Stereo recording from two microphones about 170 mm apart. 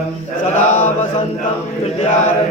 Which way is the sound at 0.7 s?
45° left (ahead or behind).